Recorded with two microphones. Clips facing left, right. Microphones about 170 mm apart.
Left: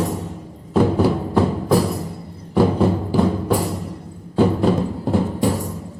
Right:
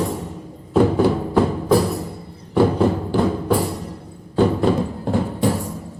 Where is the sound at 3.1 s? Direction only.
5° left (ahead or behind).